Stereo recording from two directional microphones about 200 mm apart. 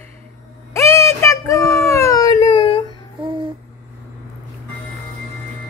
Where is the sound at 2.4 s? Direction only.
25° left (ahead or behind).